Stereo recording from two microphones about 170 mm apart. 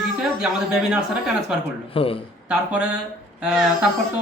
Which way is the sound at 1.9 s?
35° left (ahead or behind).